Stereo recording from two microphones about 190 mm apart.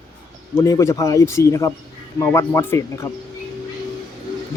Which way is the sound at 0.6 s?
15° left (ahead or behind).